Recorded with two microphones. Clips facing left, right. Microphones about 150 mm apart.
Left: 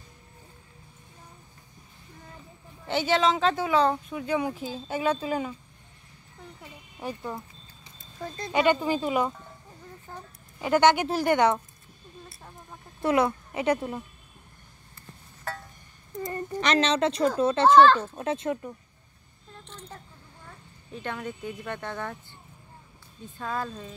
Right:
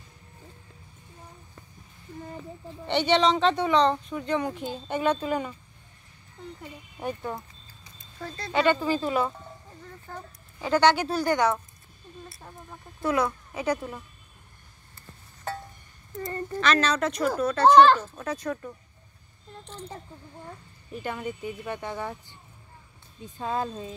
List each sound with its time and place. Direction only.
2.9 s speech: 5° left (ahead or behind)
7.0 s speech: centre (ahead or behind)
8.2 s speech: 15° left (ahead or behind)
10.6 s speech: 20° left (ahead or behind)
13.0 s speech: 25° left (ahead or behind)
16.2 s speech: 15° left (ahead or behind)
17.6 s speech: 15° right (ahead or behind)
18.0 s speech: 25° left (ahead or behind)
20.9 s speech: 5° right (ahead or behind)